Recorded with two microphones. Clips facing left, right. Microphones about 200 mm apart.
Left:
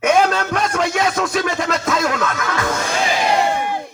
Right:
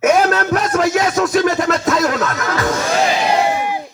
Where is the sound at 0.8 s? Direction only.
Centre (ahead or behind).